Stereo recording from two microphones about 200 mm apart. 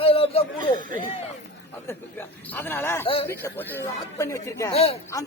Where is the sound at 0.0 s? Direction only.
30° left (ahead or behind).